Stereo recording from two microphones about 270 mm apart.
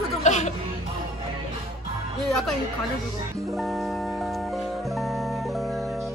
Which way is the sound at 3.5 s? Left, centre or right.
Centre.